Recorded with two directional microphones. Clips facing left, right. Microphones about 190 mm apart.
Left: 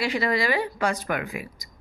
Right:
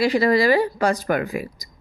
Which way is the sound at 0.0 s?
35° right (ahead or behind).